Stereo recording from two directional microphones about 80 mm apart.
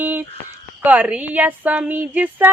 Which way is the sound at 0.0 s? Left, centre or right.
Right.